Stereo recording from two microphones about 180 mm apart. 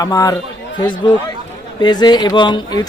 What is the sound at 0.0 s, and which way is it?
Speech, 20° left (ahead or behind).